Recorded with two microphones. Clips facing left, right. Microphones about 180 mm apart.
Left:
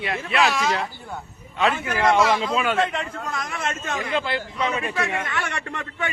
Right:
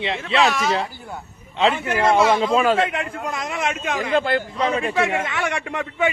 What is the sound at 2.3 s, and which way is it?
Speech, 50° right (ahead or behind).